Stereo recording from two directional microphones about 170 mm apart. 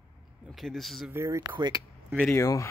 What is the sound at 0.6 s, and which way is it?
Speech, centre (ahead or behind).